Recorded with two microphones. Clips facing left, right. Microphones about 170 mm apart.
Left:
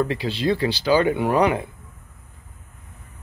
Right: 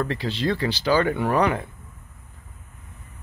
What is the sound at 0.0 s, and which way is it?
Speech, 15° left (ahead or behind).